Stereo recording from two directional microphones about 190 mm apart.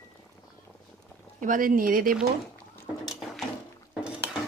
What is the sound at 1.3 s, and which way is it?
Speech, 45° right (ahead or behind).